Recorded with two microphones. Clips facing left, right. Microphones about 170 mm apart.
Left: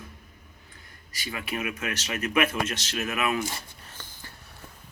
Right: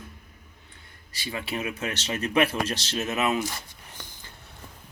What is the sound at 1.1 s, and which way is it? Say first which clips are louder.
Speech: right 1 dB; 30° right (ahead or behind).